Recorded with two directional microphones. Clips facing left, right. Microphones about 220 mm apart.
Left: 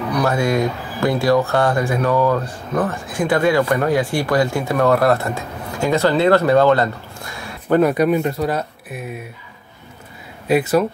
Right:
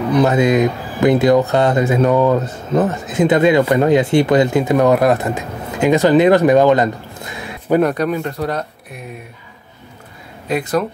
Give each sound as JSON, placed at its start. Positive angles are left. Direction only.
{"t": 0.1, "sound": "speech", "side_deg": -20}
{"t": 7.8, "sound": "speech", "side_deg": 10}
{"t": 10.5, "sound": "speech", "side_deg": 5}